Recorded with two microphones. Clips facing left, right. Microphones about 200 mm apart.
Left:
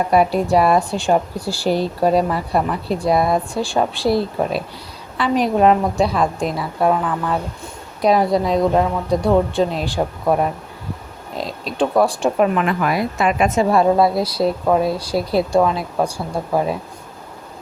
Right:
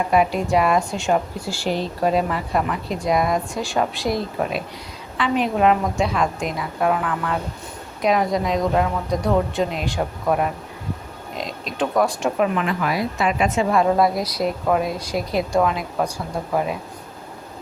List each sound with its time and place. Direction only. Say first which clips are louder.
0.1 s a woman's voice: left 3 dB; 35° left (ahead or behind)
8.0 s a woman's voice: left 4 dB; 35° left (ahead or behind)
12.4 s a woman's voice: left 4 dB; 50° left (ahead or behind); by 16.7 s 30° left (ahead or behind)